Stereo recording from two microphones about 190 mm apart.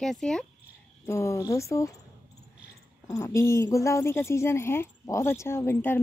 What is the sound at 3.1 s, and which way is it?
A woman's voice, 15° left (ahead or behind).